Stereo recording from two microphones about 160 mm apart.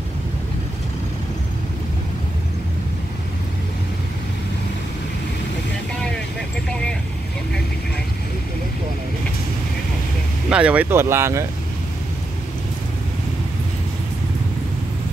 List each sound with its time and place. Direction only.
10.5 s speech: 10° right (ahead or behind)